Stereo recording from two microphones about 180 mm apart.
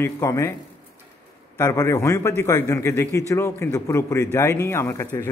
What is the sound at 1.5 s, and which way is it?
A man's voice, 15° left (ahead or behind).